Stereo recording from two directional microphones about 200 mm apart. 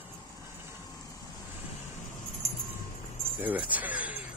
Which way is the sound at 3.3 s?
10° right (ahead or behind).